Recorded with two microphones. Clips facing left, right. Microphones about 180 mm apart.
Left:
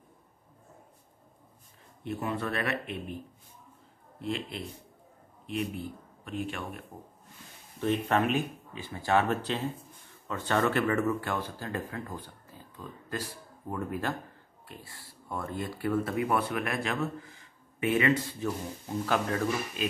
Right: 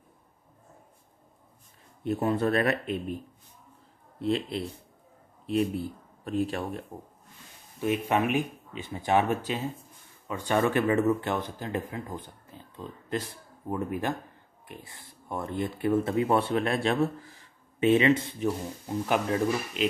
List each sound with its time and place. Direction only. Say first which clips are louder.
2.0 s a man's voice: right 7 dB; 35° right (ahead or behind)
4.2 s a man's voice: right 6 dB; 35° right (ahead or behind)
7.8 s speech: right 1 dB; 10° right (ahead or behind)